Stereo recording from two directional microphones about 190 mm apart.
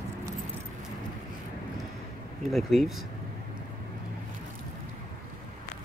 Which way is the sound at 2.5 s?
Centre (ahead or behind).